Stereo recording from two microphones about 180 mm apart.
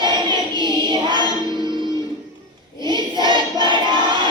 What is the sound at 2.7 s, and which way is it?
Child singing, 25° right (ahead or behind).